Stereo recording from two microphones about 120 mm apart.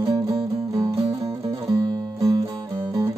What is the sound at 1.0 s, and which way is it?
Music, 50° right (ahead or behind).